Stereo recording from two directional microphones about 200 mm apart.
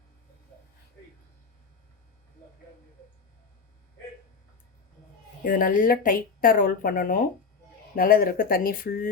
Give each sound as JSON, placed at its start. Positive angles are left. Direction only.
{"t": 5.4, "sound": "speech", "side_deg": 45}